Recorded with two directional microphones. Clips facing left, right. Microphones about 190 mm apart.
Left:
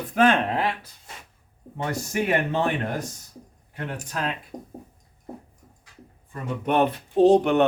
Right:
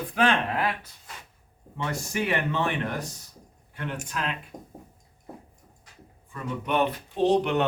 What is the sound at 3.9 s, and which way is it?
Speech, 40° left (ahead or behind).